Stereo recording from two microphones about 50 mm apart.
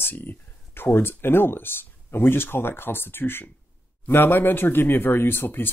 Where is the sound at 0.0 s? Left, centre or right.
Left.